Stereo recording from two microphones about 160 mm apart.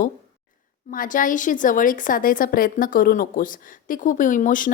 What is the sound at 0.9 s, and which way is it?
A woman's voice, 55° left (ahead or behind).